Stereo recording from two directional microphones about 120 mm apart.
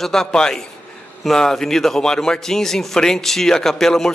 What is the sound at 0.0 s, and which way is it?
A man's voice, 5° left (ahead or behind).